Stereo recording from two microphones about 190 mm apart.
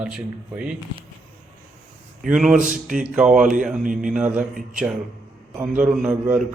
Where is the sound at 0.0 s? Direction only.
5° right (ahead or behind).